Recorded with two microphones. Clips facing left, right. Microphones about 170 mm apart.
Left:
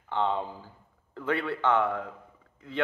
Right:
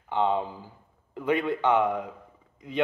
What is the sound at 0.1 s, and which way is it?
Speech, 15° right (ahead or behind).